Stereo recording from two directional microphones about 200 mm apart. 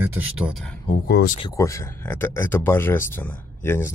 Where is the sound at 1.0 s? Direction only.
50° left (ahead or behind).